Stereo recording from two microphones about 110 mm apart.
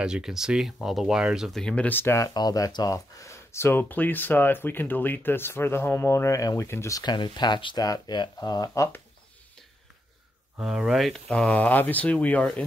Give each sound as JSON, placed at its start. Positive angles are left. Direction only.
{"t": 0.0, "sound": "speech", "side_deg": -5}
{"t": 1.6, "sound": "speech", "side_deg": 10}
{"t": 10.6, "sound": "speech", "side_deg": -5}